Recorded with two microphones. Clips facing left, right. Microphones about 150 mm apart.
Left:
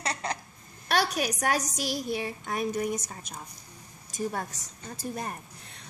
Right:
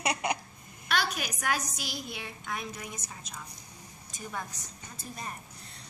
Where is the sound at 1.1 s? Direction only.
40° left (ahead or behind).